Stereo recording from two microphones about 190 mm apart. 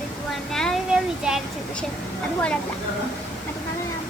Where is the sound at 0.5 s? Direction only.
Centre (ahead or behind).